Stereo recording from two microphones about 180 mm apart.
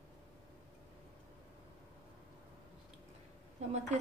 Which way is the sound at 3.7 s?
40° right (ahead or behind).